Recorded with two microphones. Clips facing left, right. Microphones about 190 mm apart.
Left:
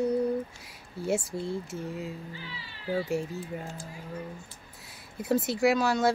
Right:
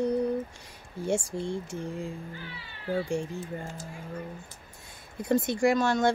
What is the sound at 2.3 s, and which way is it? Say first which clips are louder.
Speech: right 1 dB; 55° right (ahead or behind).